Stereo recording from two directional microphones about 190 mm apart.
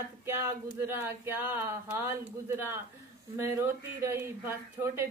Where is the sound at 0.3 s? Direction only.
15° right (ahead or behind).